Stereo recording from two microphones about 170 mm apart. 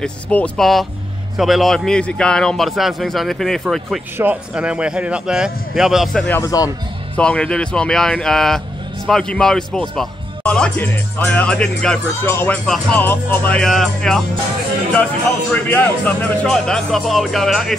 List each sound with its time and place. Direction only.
0.0 s speech: 5° left (ahead or behind)
6.2 s speech: 15° left (ahead or behind)
7.2 s speech: 5° left (ahead or behind)
15.5 s speech: 10° left (ahead or behind)